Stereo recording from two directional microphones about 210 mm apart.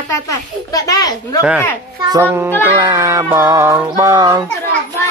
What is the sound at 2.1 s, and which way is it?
Music, 10° right (ahead or behind).